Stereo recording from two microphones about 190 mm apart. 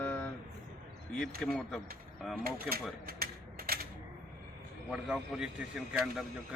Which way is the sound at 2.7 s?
50° right (ahead or behind).